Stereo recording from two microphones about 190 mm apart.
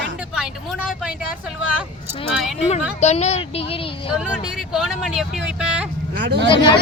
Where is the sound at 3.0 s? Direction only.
35° left (ahead or behind).